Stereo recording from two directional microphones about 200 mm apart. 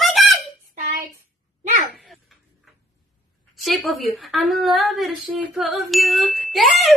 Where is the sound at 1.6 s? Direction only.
35° right (ahead or behind).